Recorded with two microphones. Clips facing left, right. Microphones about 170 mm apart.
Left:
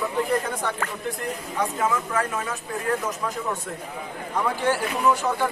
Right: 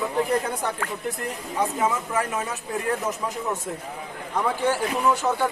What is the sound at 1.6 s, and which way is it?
Speech, 20° right (ahead or behind).